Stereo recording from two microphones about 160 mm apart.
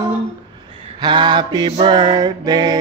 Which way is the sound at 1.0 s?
30° right (ahead or behind).